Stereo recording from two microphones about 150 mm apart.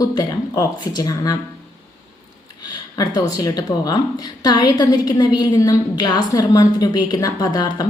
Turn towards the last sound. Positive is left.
turn(degrees=25)  # may be behind; listen again after turning